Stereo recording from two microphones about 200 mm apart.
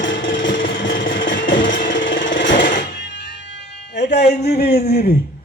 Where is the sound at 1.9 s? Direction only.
70° left (ahead or behind).